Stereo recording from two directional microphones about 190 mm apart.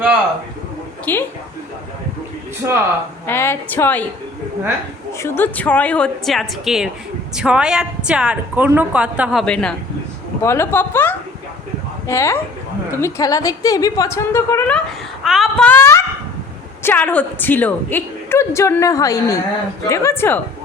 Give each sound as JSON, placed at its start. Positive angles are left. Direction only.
{"t": 1.1, "sound": "a woman's voice", "side_deg": 10}
{"t": 2.6, "sound": "speech", "side_deg": -15}
{"t": 3.2, "sound": "a woman's voice", "side_deg": 10}
{"t": 5.2, "sound": "a woman's voice", "side_deg": 10}
{"t": 15.2, "sound": "a woman's voice", "side_deg": 0}